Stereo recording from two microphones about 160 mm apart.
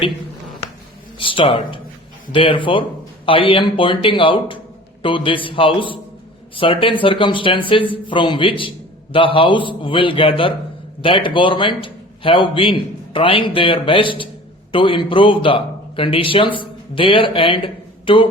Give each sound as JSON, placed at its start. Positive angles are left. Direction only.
{"t": 1.2, "sound": "a man's voice", "side_deg": 30}